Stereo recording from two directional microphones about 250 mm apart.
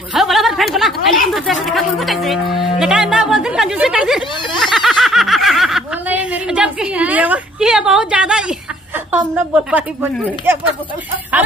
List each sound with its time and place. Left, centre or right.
0.1 s a sound: centre
1.2 s speech: centre
2.8 s music: centre
9.5 s speech: centre